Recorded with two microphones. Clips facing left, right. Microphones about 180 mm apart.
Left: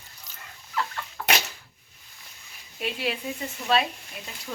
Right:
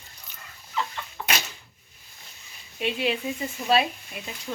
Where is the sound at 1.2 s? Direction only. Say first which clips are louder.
Left 3 dB; 15° right (ahead or behind).